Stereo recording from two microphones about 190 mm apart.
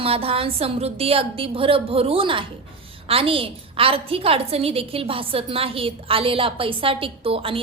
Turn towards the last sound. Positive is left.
turn(degrees=-30)  # may be behind; listen again after turning